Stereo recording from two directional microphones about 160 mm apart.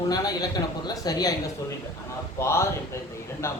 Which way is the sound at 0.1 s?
25° left (ahead or behind).